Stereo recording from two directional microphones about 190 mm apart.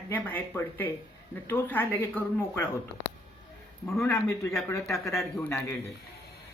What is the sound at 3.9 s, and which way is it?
Speech, 15° left (ahead or behind).